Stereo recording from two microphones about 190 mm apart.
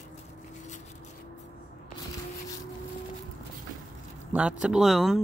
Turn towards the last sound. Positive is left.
turn(degrees=0)  # may be behind; listen again after turning